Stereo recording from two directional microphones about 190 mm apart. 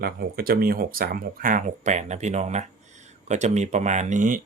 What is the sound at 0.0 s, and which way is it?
Speech, 55° right (ahead or behind).